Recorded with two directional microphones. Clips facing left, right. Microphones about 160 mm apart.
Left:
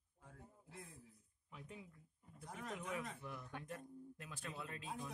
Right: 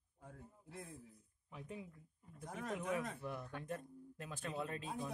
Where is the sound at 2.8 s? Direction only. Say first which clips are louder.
Right 7 dB; 45° right (ahead or behind).